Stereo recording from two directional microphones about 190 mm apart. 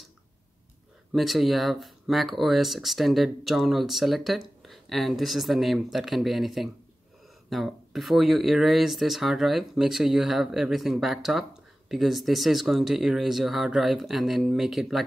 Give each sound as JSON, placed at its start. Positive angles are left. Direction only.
{"t": 1.1, "sound": "speech", "side_deg": 0}